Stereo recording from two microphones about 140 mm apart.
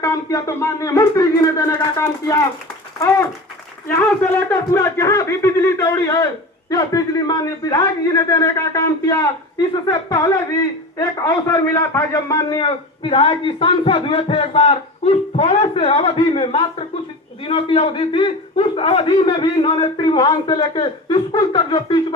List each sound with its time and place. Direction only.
0.0 s a man's voice: 25° left (ahead or behind)
3.8 s a man's voice: 15° left (ahead or behind); by 22.0 s 35° left (ahead or behind)